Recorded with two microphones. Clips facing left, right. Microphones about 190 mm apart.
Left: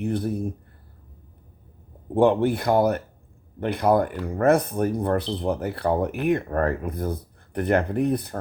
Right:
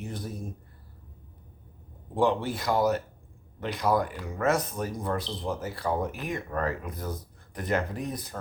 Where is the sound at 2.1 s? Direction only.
55° left (ahead or behind).